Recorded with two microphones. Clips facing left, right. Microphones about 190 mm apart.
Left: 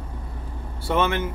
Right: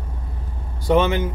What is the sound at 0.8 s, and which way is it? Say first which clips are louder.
Speech: right 5 dB; 15° right (ahead or behind).